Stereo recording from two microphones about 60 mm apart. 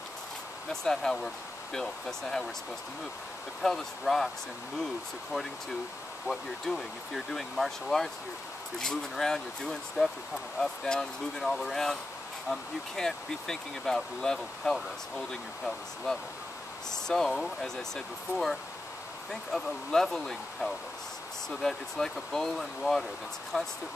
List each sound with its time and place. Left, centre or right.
0.8 s speech: centre
3.6 s speech: centre
6.2 s speech: centre
16.9 s speech: centre
23.5 s speech: centre